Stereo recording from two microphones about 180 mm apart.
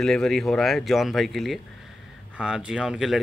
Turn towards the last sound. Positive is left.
turn(degrees=-5)  # may be behind; listen again after turning